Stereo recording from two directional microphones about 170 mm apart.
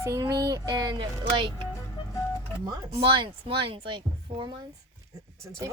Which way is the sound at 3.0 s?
30° right (ahead or behind).